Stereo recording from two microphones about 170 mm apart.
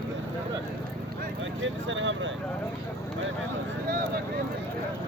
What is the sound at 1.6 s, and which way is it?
Speech, 90° right.